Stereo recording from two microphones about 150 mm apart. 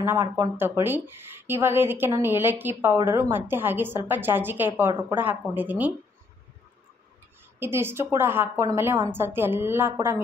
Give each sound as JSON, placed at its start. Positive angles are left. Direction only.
{"t": 0.0, "sound": "speech", "side_deg": -15}
{"t": 7.5, "sound": "speech", "side_deg": -15}